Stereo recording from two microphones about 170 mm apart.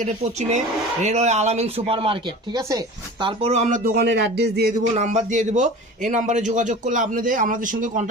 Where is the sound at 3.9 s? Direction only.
75° right (ahead or behind).